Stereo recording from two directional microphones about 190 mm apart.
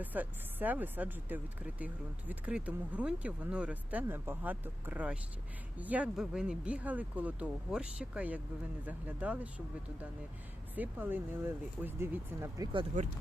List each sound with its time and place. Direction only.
0.0 s speech: 10° right (ahead or behind)
10.8 s speech: 10° right (ahead or behind)
12.9 s speech: 40° right (ahead or behind)